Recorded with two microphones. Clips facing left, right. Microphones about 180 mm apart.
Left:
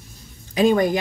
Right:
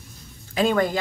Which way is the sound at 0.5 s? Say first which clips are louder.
Left 4 dB; 15° left (ahead or behind).